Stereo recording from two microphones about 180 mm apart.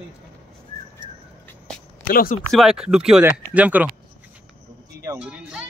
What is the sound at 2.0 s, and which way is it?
Speech, 50° left (ahead or behind).